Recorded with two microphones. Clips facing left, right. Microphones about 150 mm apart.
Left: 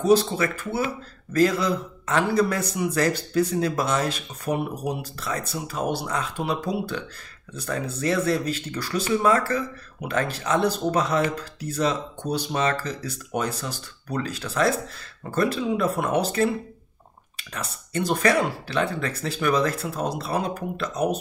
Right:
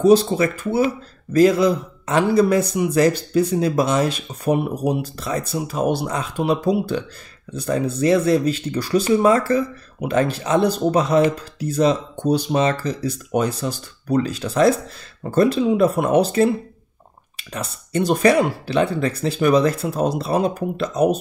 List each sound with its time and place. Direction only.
0.1 s speech: 20° right (ahead or behind)